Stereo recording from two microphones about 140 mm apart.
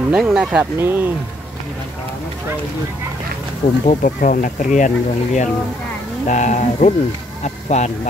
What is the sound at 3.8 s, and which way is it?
Speech, 75° left (ahead or behind).